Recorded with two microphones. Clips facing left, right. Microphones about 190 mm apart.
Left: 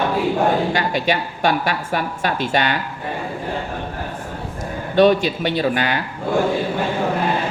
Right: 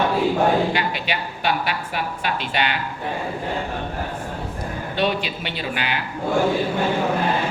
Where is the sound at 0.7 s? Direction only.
45° left (ahead or behind).